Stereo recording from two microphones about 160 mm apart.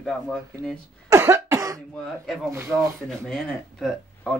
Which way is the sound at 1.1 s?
15° right (ahead or behind).